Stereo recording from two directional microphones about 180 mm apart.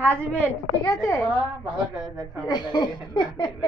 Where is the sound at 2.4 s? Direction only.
25° left (ahead or behind).